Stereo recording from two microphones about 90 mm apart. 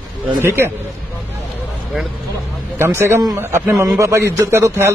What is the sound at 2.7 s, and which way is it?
A man's voice, 25° right (ahead or behind).